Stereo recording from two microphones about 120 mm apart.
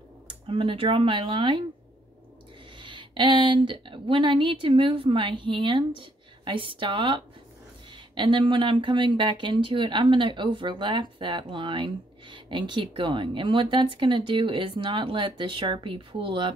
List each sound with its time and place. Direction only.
0.3 s speech: 45° right (ahead or behind)
2.8 s speech: 45° right (ahead or behind)